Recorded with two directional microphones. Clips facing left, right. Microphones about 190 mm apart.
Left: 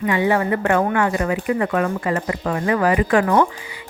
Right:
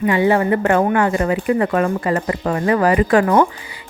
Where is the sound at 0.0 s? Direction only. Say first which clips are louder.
Right 3 dB; 30° right (ahead or behind).